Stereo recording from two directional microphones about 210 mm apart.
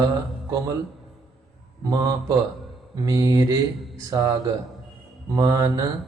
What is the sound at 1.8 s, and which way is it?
Speech, 15° right (ahead or behind).